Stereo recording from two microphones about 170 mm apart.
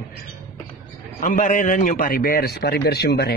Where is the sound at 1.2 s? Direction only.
50° left (ahead or behind).